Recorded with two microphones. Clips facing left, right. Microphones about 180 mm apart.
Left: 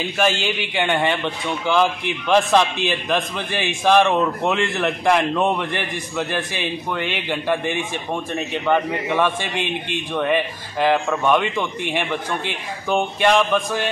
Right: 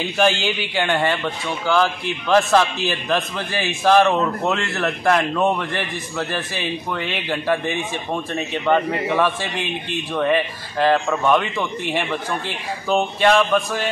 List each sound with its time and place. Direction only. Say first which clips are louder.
0.2 s a man's voice: right 2 dB; 10° left (ahead or behind)
10.2 s a man's voice: right 2 dB; 15° left (ahead or behind)
12.4 s a man's voice: right 1 dB; 10° left (ahead or behind)